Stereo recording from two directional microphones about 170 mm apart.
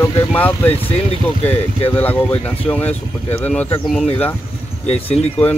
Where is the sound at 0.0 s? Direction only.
10° left (ahead or behind).